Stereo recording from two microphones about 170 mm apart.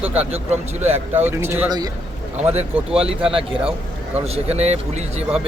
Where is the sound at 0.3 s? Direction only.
35° right (ahead or behind).